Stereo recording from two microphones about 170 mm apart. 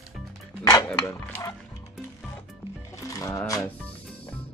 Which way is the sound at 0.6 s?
20° left (ahead or behind).